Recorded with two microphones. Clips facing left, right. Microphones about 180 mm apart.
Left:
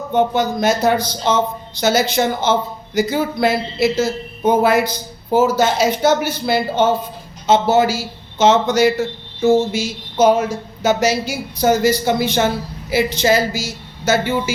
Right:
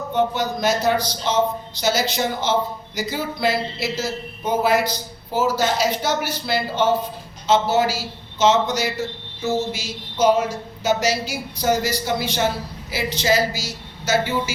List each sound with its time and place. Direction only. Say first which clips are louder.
0.1 s a man's voice: left 5 dB; 50° left (ahead or behind)